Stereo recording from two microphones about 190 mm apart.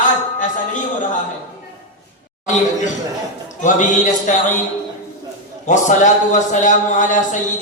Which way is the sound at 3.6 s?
40° left (ahead or behind).